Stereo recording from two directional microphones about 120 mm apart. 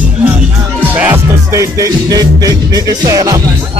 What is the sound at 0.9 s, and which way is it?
Music, 20° right (ahead or behind).